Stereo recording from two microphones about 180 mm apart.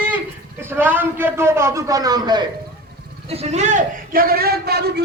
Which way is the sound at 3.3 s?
35° right (ahead or behind).